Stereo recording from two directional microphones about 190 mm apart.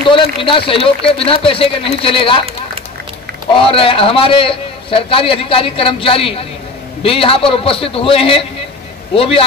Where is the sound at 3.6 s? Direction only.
30° left (ahead or behind).